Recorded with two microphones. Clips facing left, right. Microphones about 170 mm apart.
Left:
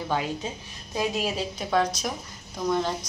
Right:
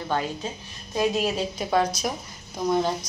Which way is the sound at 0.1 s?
10° left (ahead or behind).